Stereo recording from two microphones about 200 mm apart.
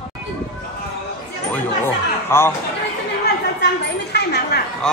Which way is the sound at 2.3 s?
10° left (ahead or behind).